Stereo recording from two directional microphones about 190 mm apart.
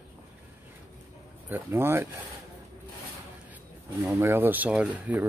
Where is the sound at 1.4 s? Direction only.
10° right (ahead or behind).